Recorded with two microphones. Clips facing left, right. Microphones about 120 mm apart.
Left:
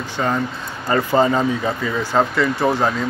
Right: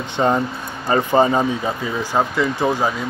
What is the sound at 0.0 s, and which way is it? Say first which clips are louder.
Speech: right 3 dB; 20° right (ahead or behind).